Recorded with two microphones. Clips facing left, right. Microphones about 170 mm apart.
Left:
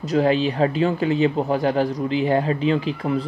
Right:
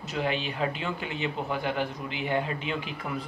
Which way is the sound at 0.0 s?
35° left (ahead or behind).